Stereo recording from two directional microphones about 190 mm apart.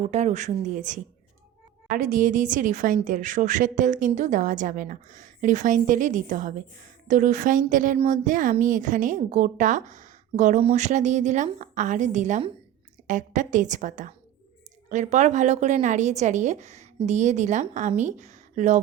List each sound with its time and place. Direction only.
0.0 s a woman's voice: 35° right (ahead or behind)